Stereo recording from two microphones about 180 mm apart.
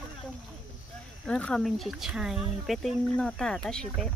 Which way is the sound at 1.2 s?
5° left (ahead or behind).